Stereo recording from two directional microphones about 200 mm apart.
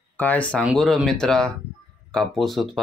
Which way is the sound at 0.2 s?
5° left (ahead or behind).